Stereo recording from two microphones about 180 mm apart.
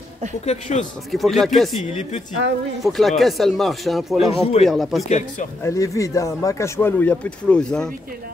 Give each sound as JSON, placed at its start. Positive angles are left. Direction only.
{"t": 0.5, "sound": "speech", "side_deg": 40}
{"t": 1.1, "sound": "speech", "side_deg": 0}
{"t": 2.8, "sound": "speech", "side_deg": 0}
{"t": 4.4, "sound": "speech", "side_deg": 35}
{"t": 4.6, "sound": "speech", "side_deg": 0}
{"t": 5.6, "sound": "speech", "side_deg": 15}